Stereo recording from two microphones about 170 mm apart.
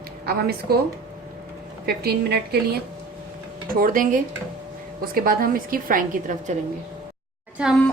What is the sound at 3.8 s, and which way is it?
A woman's voice, 55° right (ahead or behind).